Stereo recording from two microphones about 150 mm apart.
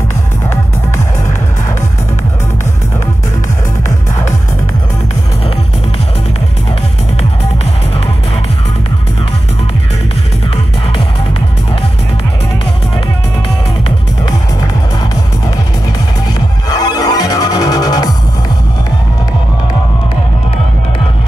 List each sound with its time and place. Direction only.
16.3 s music: 25° left (ahead or behind)